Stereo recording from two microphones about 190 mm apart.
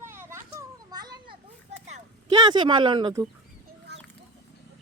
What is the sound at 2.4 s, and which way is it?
Speech, 25° right (ahead or behind).